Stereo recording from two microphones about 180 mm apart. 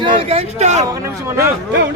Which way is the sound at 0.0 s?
35° right (ahead or behind).